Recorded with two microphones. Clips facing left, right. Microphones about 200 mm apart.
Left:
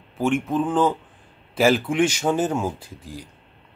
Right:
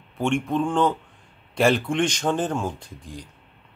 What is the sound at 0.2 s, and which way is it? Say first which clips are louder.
A man's voice: left 1 dB; 5° left (ahead or behind).